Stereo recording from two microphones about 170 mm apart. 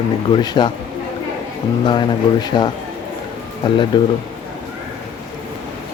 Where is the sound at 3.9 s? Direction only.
25° left (ahead or behind).